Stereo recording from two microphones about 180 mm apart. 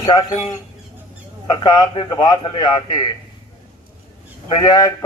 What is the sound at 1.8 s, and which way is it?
A man's voice, 20° left (ahead or behind).